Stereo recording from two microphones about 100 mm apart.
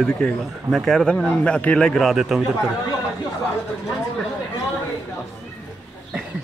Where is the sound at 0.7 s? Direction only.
Centre (ahead or behind).